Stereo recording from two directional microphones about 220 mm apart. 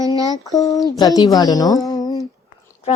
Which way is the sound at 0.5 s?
15° left (ahead or behind).